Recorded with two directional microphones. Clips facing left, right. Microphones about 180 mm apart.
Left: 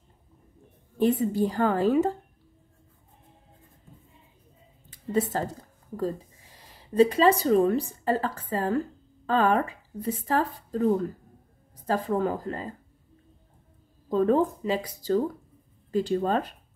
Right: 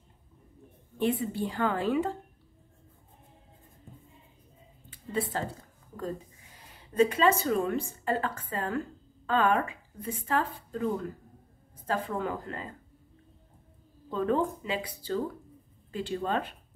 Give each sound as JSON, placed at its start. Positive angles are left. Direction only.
{"t": 1.2, "sound": "speech", "side_deg": 40}
{"t": 4.8, "sound": "speech", "side_deg": 40}
{"t": 14.0, "sound": "speech", "side_deg": 40}